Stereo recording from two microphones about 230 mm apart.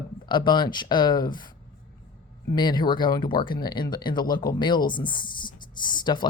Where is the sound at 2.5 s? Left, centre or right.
Centre.